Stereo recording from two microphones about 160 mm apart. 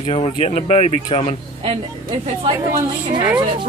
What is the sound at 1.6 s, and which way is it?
Speech, 35° right (ahead or behind).